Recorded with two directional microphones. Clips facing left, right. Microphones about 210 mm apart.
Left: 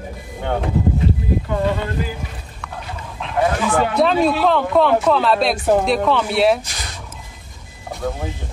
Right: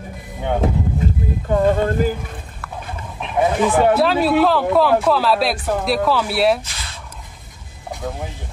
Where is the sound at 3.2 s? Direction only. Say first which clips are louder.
Right 1 dB; 15° right (ahead or behind).